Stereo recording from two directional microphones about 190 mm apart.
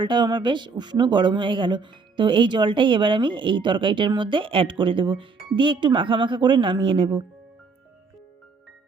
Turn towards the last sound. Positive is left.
turn(degrees=-25)  # may be behind; listen again after turning